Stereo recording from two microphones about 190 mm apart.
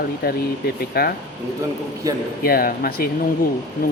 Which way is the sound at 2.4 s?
50° left (ahead or behind).